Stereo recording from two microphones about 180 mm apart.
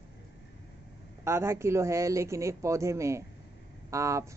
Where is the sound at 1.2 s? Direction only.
15° right (ahead or behind).